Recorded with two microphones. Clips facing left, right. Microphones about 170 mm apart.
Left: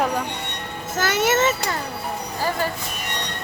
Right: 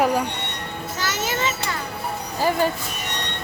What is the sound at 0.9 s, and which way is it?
Speech, 60° left (ahead or behind).